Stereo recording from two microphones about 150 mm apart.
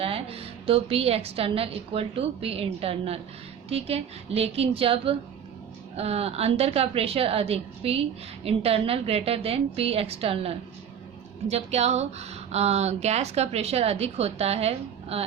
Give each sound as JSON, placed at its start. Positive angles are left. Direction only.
{"t": 0.0, "sound": "a woman's voice", "side_deg": -40}